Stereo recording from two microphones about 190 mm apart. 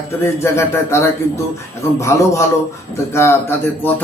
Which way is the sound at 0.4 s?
15° left (ahead or behind).